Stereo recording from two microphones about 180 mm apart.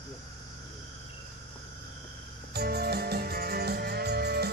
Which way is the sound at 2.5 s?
60° right (ahead or behind).